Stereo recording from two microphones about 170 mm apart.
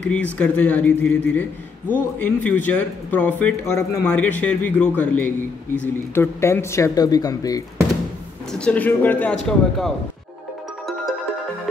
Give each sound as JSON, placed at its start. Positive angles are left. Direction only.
{"t": 0.0, "sound": "a man's voice", "side_deg": 5}
{"t": 8.5, "sound": "a man's voice", "side_deg": 10}